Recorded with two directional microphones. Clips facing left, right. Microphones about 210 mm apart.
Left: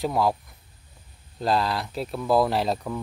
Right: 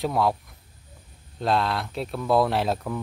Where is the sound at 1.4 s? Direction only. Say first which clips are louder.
Even; centre (ahead or behind).